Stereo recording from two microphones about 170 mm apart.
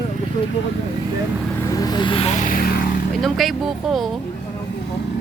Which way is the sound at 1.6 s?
20° left (ahead or behind).